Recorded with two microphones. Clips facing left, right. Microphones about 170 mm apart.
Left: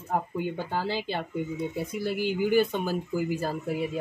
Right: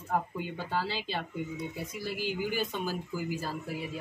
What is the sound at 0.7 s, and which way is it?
Speech, 50° left (ahead or behind).